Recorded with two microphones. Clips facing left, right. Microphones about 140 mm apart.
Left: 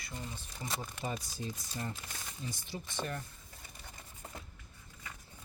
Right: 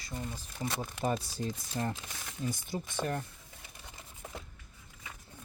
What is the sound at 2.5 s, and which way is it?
Speech, 45° right (ahead or behind).